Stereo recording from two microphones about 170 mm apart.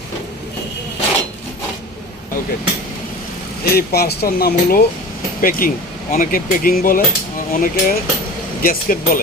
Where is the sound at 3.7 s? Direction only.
70° left (ahead or behind).